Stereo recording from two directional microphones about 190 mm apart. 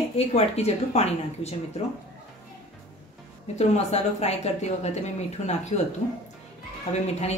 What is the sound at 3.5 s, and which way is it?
Speech, 35° left (ahead or behind).